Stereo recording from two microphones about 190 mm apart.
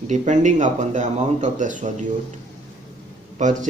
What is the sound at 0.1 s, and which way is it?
Speech, 40° right (ahead or behind).